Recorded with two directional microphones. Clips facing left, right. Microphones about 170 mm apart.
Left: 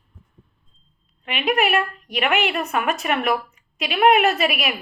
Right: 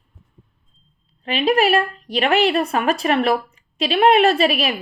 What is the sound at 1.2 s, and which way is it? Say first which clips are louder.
A woman's voice: right 4 dB; 30° right (ahead or behind).